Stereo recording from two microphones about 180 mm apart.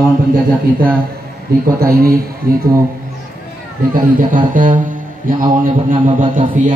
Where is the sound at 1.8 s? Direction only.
55° right (ahead or behind).